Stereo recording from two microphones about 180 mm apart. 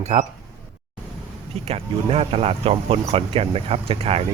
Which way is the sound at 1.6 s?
35° right (ahead or behind).